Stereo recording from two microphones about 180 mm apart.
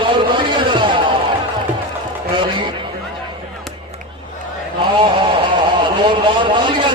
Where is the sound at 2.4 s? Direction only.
25° right (ahead or behind).